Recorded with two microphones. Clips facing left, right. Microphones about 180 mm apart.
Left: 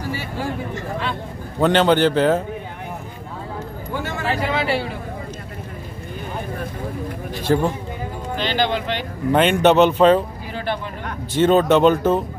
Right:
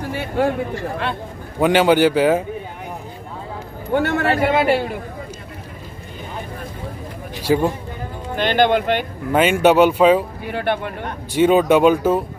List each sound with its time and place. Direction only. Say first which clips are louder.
0.1 s a man's voice: right 10 dB; 55° right (ahead or behind)
1.6 s speech: right 2 dB; 10° right (ahead or behind)
3.9 s a man's voice: right 7 dB; 60° right (ahead or behind)
7.4 s speech: right 1 dB; 10° right (ahead or behind)
8.4 s speech: right 6 dB; 55° right (ahead or behind)
9.3 s speech: right 1 dB; 5° right (ahead or behind)
10.4 s a man's voice: right 4 dB; 60° right (ahead or behind)
11.3 s speech: right 1 dB; 10° right (ahead or behind)